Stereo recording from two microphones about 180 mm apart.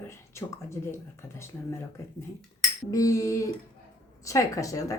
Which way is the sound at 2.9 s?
20° left (ahead or behind).